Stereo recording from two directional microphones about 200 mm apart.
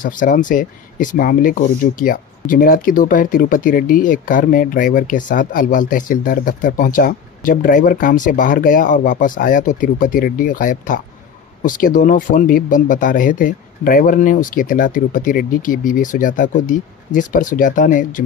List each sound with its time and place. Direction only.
0.0 s speech: 40° left (ahead or behind)